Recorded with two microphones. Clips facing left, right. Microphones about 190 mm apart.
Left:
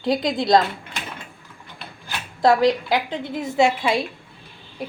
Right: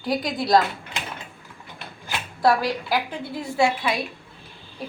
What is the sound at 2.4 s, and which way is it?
Speech, 20° left (ahead or behind).